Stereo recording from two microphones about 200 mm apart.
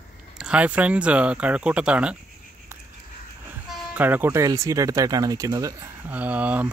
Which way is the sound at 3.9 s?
10° right (ahead or behind).